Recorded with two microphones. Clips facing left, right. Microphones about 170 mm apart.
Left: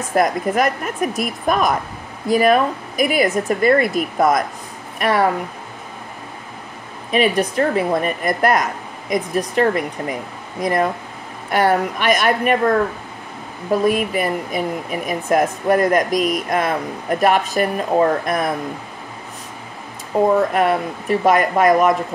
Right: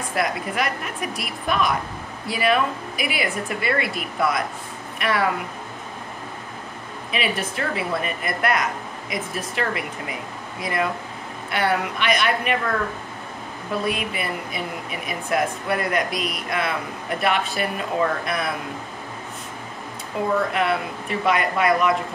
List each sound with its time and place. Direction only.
0.1 s speech: 45° left (ahead or behind)
7.1 s speech: 40° left (ahead or behind)
20.3 s speech: 45° left (ahead or behind)